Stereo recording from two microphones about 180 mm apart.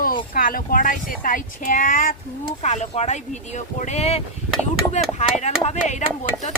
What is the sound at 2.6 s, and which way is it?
Speech, 40° left (ahead or behind).